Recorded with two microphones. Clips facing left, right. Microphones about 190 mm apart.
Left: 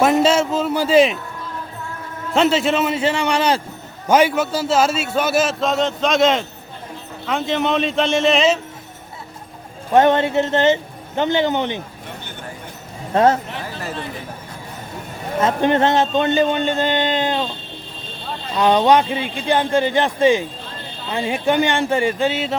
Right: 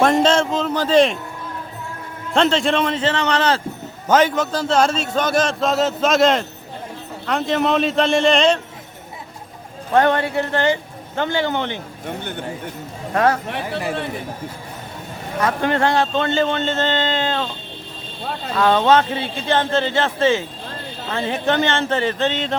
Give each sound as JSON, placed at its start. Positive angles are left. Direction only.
{"t": 0.0, "sound": "a sound", "side_deg": 5}
{"t": 2.3, "sound": "a man's voice", "side_deg": 5}
{"t": 9.9, "sound": "speech", "side_deg": 20}
{"t": 13.1, "sound": "speech", "side_deg": 25}
{"t": 15.4, "sound": "a man's voice", "side_deg": 20}
{"t": 18.5, "sound": "a man's voice", "side_deg": 15}